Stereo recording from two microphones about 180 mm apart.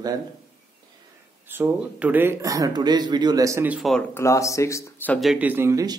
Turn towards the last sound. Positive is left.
turn(degrees=-15)  # may be behind; listen again after turning